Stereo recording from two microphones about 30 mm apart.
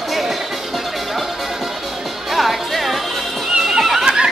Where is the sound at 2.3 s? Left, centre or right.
Centre.